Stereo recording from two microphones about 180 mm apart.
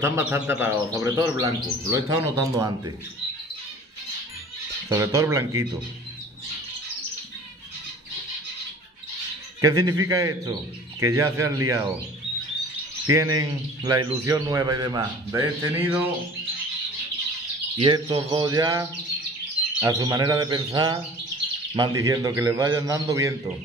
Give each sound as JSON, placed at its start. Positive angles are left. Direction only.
{"t": 0.0, "sound": "speech", "side_deg": -10}
{"t": 4.8, "sound": "speech", "side_deg": -15}
{"t": 9.6, "sound": "speech", "side_deg": -20}
{"t": 13.1, "sound": "speech", "side_deg": -20}
{"t": 17.7, "sound": "speech", "side_deg": -30}